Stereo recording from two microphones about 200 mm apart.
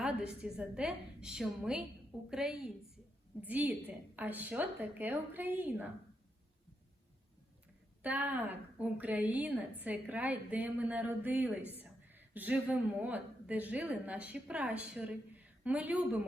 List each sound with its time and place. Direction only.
0.0 s a woman's voice: 5° right (ahead or behind)
8.0 s a woman's voice: 10° right (ahead or behind)